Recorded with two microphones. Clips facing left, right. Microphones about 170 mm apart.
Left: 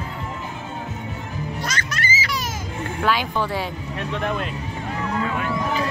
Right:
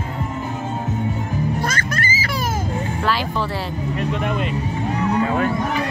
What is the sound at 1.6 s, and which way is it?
Music, 50° right (ahead or behind).